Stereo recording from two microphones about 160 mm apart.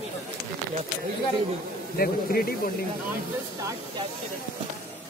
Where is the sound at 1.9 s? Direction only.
65° left (ahead or behind).